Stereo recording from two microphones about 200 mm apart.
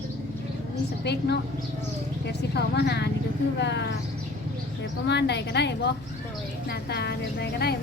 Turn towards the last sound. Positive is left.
turn(degrees=55)  # may be behind; listen again after turning